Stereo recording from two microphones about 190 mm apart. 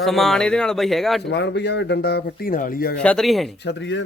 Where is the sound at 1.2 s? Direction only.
65° left (ahead or behind).